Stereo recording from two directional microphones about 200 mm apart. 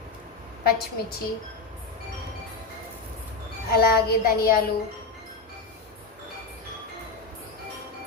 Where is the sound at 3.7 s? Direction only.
50° left (ahead or behind).